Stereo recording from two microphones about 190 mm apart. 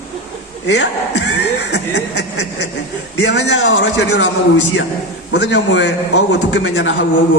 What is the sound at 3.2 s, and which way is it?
A man's voice, 65° left (ahead or behind).